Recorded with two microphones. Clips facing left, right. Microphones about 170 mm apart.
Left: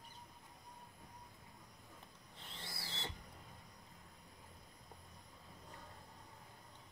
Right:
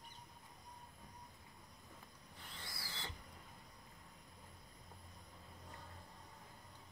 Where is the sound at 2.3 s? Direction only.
25° left (ahead or behind).